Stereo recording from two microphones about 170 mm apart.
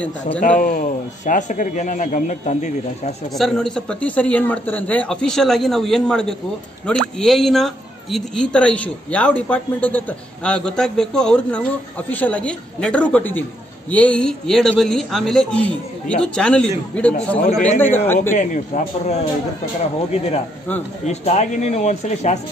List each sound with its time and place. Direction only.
0.4 s a man's voice: 50° left (ahead or behind)
3.3 s a woman's voice: centre (ahead or behind)
17.4 s a man's voice: 40° left (ahead or behind)
17.7 s a woman's voice: 10° left (ahead or behind)
18.3 s a man's voice: 45° left (ahead or behind)
21.0 s speech: 40° left (ahead or behind)